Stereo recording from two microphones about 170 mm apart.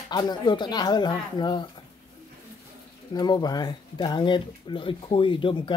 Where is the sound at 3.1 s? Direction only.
25° left (ahead or behind).